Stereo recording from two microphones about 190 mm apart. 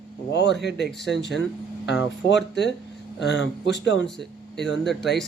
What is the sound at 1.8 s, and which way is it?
Speech, 65° left (ahead or behind).